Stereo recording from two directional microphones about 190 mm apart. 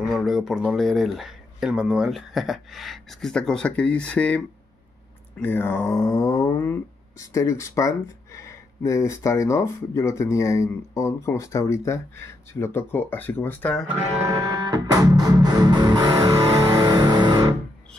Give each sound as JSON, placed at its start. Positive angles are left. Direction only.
{"t": 0.1, "sound": "speech", "side_deg": 0}
{"t": 5.4, "sound": "speech", "side_deg": 10}
{"t": 14.2, "sound": "music", "side_deg": -20}